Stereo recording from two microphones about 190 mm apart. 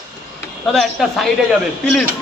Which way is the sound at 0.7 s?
Centre (ahead or behind).